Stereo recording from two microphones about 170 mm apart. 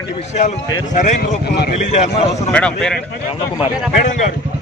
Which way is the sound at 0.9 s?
45° left (ahead or behind).